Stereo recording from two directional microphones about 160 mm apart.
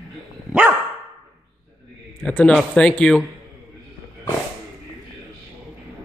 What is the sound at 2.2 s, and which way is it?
A man's voice, 5° left (ahead or behind).